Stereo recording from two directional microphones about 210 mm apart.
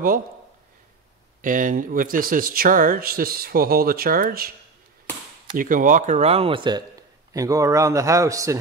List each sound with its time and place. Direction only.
1.4 s speech: 40° right (ahead or behind)
5.6 s speech: 40° right (ahead or behind); by 8.5 s 15° right (ahead or behind)